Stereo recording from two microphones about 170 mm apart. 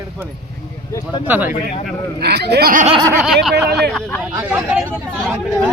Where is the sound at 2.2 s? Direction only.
75° right (ahead or behind); by 2.9 s 60° right (ahead or behind).